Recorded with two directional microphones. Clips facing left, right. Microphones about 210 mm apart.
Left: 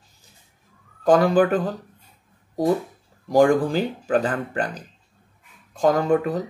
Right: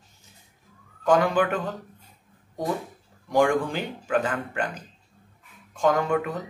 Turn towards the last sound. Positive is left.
turn(degrees=35)  # may be behind; listen again after turning